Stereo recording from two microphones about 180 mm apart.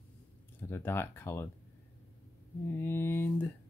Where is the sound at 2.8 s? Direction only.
15° left (ahead or behind).